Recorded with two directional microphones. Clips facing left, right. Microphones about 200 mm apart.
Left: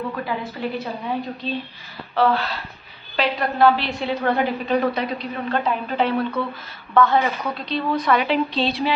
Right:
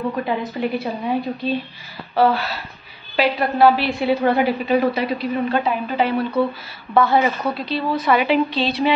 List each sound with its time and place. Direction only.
0.1 s a woman's voice: 20° right (ahead or behind); by 8.9 s centre (ahead or behind)